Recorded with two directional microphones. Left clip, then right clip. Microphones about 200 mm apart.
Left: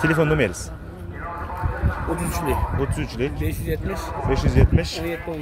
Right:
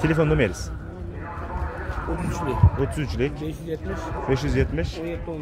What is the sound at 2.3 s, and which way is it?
Speech, 45° left (ahead or behind).